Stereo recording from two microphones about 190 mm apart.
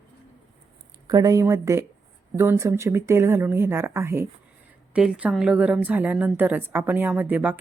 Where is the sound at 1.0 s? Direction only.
20° right (ahead or behind).